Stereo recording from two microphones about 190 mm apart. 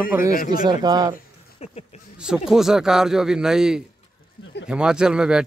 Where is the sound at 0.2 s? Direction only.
45° left (ahead or behind).